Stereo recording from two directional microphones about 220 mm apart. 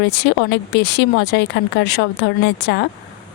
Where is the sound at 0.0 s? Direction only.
50° left (ahead or behind).